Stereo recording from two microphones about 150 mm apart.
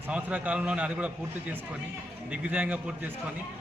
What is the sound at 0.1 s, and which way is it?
A man's voice, 10° right (ahead or behind).